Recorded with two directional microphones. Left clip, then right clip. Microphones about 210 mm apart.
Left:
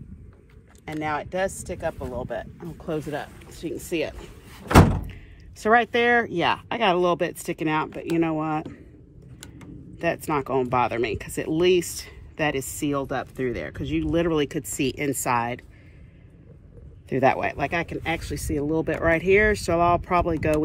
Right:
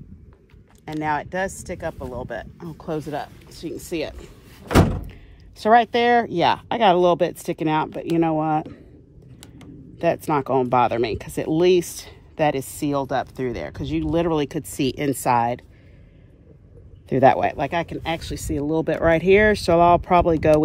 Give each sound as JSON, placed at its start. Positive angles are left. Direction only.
{"t": 0.8, "sound": "speech", "side_deg": -40}
{"t": 4.1, "sound": "speech", "side_deg": 0}
{"t": 5.6, "sound": "speech", "side_deg": -45}
{"t": 9.9, "sound": "speech", "side_deg": -45}
{"t": 17.1, "sound": "speech", "side_deg": -50}